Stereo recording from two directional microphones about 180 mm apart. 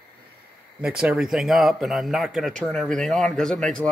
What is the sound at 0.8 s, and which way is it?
Speech, 5° right (ahead or behind).